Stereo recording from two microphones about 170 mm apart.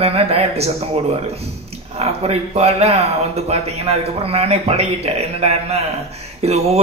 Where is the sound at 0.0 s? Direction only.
35° right (ahead or behind).